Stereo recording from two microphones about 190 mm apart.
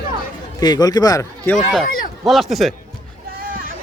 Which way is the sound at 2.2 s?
Centre (ahead or behind).